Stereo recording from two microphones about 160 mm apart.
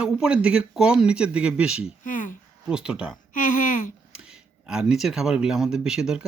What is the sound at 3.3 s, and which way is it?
Speech, 55° left (ahead or behind).